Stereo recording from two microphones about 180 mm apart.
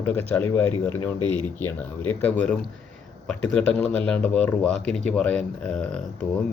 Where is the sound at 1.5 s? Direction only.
10° left (ahead or behind).